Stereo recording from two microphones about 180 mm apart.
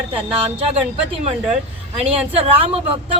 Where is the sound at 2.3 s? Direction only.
35° right (ahead or behind).